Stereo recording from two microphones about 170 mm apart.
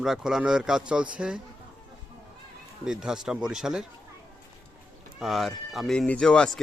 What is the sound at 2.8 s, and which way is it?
Speech, 5° right (ahead or behind).